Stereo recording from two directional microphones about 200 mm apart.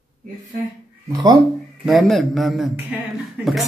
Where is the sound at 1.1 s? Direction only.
20° right (ahead or behind).